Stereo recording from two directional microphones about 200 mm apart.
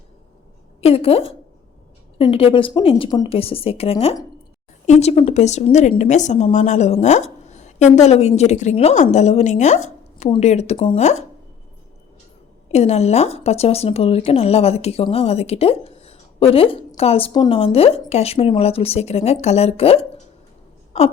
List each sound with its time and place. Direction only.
0.8 s a woman's voice: 30° left (ahead or behind)
12.7 s a woman's voice: 30° left (ahead or behind)